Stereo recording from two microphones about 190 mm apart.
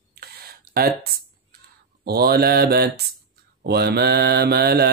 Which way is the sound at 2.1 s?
55° right (ahead or behind).